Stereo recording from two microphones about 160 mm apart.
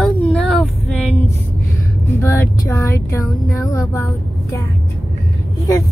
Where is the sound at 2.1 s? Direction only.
15° left (ahead or behind).